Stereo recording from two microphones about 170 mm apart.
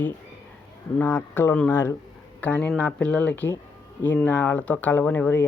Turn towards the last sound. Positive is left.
turn(degrees=10)  # may be behind; listen again after turning